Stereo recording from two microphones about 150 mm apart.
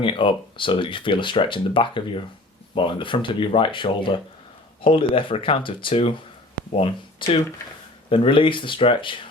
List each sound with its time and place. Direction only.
0.0 s speech: 35° left (ahead or behind)